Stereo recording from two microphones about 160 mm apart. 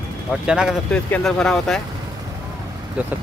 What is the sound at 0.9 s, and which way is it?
Speech, 5° left (ahead or behind).